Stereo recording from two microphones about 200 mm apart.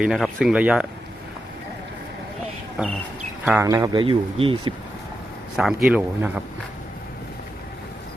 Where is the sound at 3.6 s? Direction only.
15° right (ahead or behind).